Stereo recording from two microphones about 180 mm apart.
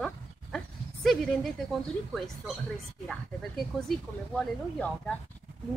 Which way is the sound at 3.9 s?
5° left (ahead or behind).